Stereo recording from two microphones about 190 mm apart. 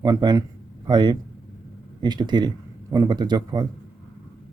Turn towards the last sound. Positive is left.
turn(degrees=-20)  # may be behind; listen again after turning